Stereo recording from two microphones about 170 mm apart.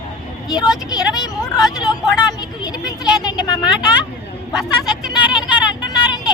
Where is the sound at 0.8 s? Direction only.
20° left (ahead or behind).